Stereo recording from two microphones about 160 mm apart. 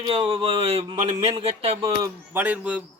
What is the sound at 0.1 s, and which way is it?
A man's voice, 40° right (ahead or behind).